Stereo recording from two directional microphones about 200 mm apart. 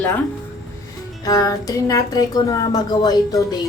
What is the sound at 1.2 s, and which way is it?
Speech, 20° left (ahead or behind).